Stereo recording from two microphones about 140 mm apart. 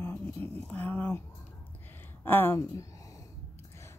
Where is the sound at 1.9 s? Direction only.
15° left (ahead or behind).